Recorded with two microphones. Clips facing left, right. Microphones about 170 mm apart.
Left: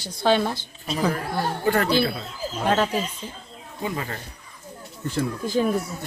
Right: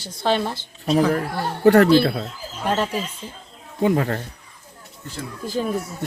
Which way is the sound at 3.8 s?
65° right (ahead or behind).